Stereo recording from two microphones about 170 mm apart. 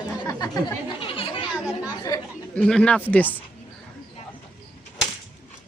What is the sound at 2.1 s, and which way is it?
Speech, 20° left (ahead or behind).